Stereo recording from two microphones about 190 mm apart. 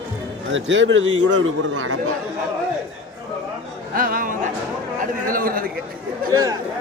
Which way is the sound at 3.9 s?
50° right (ahead or behind).